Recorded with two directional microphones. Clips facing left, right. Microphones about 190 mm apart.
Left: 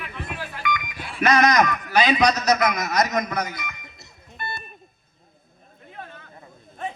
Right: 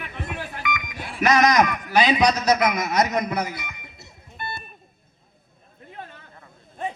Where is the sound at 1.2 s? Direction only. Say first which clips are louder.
Even; 15° right (ahead or behind).